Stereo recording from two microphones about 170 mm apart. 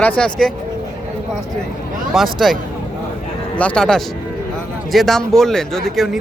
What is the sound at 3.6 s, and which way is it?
Speech, 5° left (ahead or behind).